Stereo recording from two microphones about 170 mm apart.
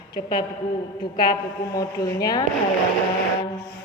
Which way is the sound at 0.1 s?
55° left (ahead or behind).